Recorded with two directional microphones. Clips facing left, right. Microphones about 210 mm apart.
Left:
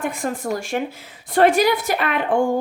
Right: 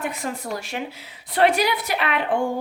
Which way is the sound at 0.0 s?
50° left (ahead or behind).